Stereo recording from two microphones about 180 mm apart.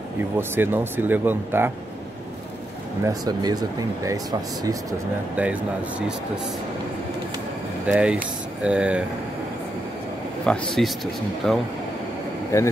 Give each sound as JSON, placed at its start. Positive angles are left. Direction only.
{"t": 0.4, "sound": "speech", "side_deg": -10}
{"t": 3.1, "sound": "speech", "side_deg": -20}
{"t": 5.3, "sound": "speech", "side_deg": -10}
{"t": 7.8, "sound": "speech", "side_deg": -5}
{"t": 10.4, "sound": "speech", "side_deg": 5}
{"t": 12.5, "sound": "speech", "side_deg": 15}